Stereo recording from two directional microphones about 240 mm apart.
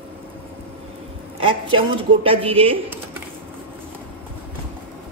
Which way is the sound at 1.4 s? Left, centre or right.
Right.